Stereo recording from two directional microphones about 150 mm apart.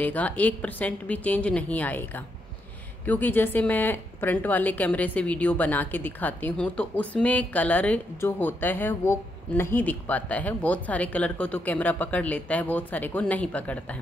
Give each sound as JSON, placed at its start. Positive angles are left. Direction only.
{"t": 0.0, "sound": "a woman's voice", "side_deg": 10}